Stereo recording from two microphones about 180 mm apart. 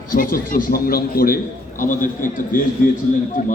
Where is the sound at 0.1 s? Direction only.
50° left (ahead or behind).